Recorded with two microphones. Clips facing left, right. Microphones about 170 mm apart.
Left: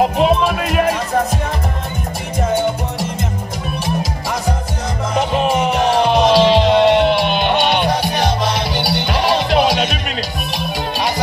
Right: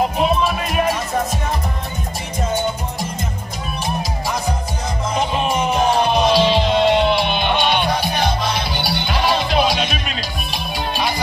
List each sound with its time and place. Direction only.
0.2 s music: 80° left
5.1 s music: 75° left (ahead or behind)